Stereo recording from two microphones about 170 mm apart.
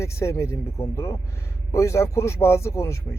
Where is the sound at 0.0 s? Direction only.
15° left (ahead or behind).